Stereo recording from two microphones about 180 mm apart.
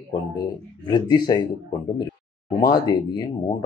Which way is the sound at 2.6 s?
20° left (ahead or behind).